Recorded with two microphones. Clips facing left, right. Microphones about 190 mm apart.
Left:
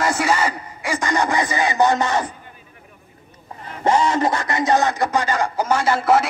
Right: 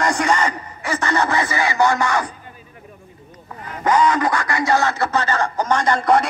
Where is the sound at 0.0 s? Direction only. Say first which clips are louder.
Right 1 dB; 5° left (ahead or behind); by 2.3 s 20° left (ahead or behind).